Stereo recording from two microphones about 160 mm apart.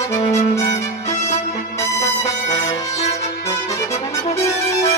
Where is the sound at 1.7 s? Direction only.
20° left (ahead or behind).